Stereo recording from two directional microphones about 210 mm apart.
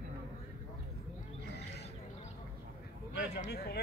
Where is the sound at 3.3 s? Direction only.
50° left (ahead or behind).